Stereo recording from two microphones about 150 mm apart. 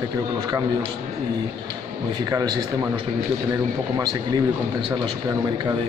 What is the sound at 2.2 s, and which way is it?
Speech, 25° right (ahead or behind).